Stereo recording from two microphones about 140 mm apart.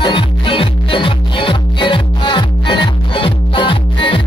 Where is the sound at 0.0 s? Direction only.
35° left (ahead or behind).